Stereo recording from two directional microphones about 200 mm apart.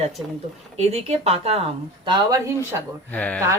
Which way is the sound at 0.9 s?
30° right (ahead or behind).